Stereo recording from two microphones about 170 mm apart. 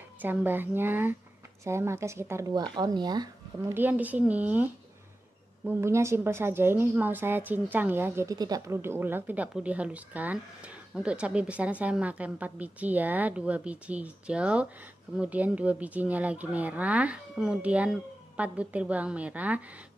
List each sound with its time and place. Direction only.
0.2 s a woman's voice: 10° right (ahead or behind)
3.7 s a woman's voice: 10° right (ahead or behind)
5.7 s a woman's voice: 15° right (ahead or behind)